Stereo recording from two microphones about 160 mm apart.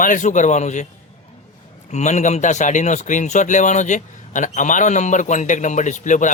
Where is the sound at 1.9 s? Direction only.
45° left (ahead or behind).